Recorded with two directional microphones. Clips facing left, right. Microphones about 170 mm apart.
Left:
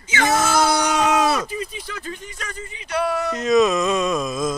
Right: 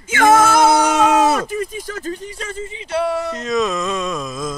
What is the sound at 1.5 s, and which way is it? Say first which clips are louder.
Speech: right 6 dB; 50° right (ahead or behind).